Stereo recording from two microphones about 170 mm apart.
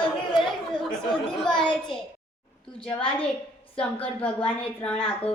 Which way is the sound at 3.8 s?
10° left (ahead or behind).